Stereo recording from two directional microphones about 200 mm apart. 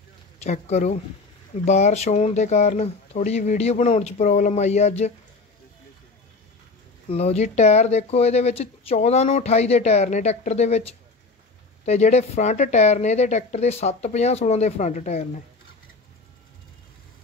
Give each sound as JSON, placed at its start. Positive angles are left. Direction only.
{"t": 0.4, "sound": "speech", "side_deg": 35}
{"t": 7.1, "sound": "speech", "side_deg": 30}